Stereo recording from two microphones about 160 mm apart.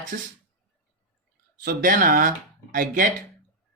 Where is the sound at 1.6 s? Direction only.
55° right (ahead or behind).